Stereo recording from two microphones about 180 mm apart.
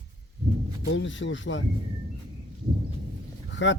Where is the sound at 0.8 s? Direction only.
90° left.